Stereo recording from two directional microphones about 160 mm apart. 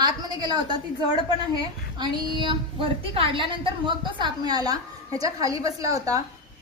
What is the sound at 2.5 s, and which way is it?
A woman's voice, 35° right (ahead or behind).